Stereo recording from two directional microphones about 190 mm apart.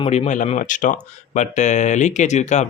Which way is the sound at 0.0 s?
40° left (ahead or behind).